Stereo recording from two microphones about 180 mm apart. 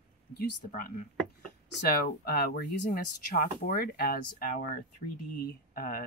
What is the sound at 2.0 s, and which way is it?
Speech, 60° left (ahead or behind).